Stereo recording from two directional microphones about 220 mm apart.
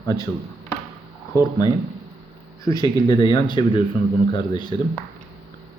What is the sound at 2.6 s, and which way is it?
A man's voice, 15° left (ahead or behind).